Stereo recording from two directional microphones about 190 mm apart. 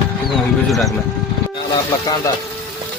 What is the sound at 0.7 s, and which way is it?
Speech, centre (ahead or behind).